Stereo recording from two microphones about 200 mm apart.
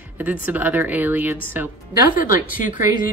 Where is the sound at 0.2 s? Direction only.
10° right (ahead or behind).